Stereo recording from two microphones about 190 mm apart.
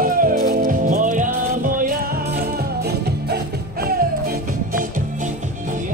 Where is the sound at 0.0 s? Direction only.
45° right (ahead or behind).